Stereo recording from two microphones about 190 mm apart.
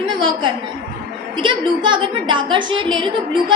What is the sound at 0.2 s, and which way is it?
A woman's voice, 25° right (ahead or behind).